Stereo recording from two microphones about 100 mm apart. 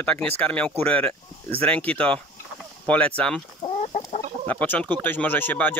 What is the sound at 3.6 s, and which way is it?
Chicken, 90° left.